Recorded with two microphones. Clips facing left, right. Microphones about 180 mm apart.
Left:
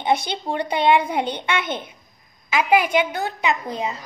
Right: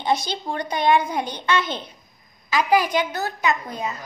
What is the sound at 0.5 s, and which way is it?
Speech, 30° left (ahead or behind).